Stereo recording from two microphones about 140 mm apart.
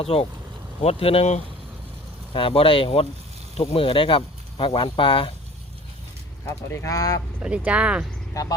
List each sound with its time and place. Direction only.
0.0 s speech: 45° left (ahead or behind)
6.4 s speech: 20° left (ahead or behind)
7.3 s speech: 10° right (ahead or behind)
8.3 s speech: 25° left (ahead or behind)